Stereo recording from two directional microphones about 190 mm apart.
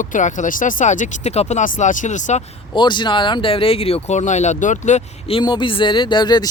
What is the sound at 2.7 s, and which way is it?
Speech, 25° left (ahead or behind).